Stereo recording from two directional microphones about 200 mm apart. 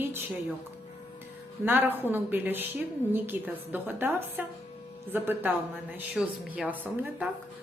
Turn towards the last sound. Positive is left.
turn(degrees=-5)  # may be behind; listen again after turning